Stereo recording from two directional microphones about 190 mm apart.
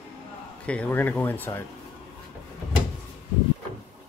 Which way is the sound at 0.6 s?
5° left (ahead or behind).